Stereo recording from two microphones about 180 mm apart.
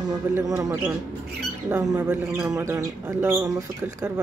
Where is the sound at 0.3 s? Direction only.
15° right (ahead or behind).